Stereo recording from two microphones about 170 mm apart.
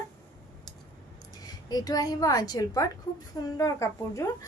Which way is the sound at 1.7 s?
20° left (ahead or behind).